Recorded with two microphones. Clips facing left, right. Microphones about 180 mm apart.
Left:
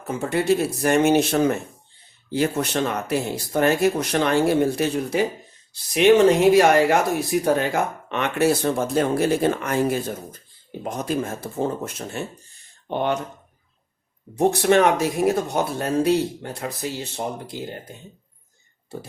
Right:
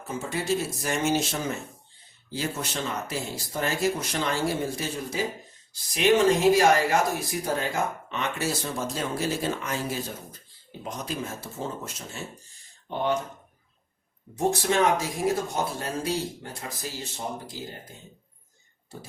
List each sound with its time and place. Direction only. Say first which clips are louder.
0.1 s speech: left 7 dB; 60° left (ahead or behind)
14.3 s speech: left 7 dB; 65° left (ahead or behind)